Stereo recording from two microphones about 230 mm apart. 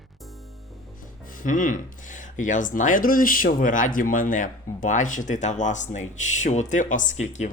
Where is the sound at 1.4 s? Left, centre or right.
Left.